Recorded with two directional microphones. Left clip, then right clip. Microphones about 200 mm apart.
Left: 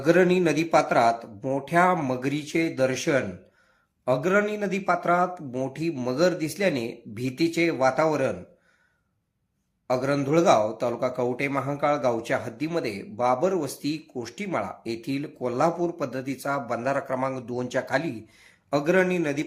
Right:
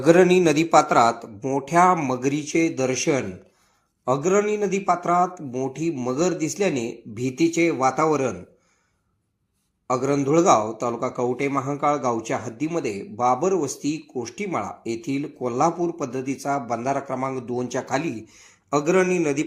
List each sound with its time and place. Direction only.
0.0 s a man's voice: 10° right (ahead or behind)
9.8 s a man's voice: centre (ahead or behind)